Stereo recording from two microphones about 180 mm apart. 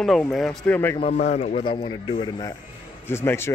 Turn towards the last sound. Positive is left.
turn(degrees=15)  # may be behind; listen again after turning